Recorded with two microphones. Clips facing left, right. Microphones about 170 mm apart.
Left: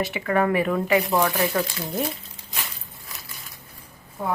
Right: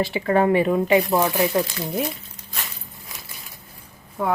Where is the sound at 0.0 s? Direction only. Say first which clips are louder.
Right 3 dB; 30° right (ahead or behind).